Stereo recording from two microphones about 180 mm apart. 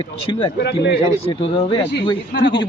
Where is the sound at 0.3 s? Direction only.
30° left (ahead or behind).